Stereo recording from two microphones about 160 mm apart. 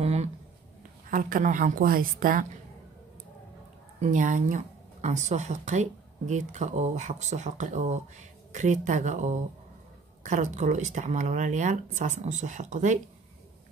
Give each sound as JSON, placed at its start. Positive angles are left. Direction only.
{"t": 0.0, "sound": "a sound", "side_deg": -45}
{"t": 1.1, "sound": "a woman's voice", "side_deg": -55}
{"t": 4.0, "sound": "speech", "side_deg": -50}